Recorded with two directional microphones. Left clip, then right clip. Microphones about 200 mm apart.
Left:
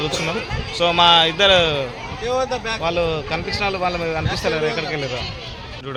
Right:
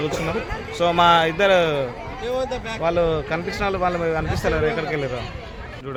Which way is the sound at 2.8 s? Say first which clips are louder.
Right 3 dB; 20° right (ahead or behind).